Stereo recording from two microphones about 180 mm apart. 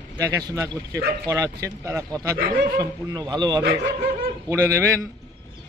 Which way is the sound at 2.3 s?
55° right (ahead or behind).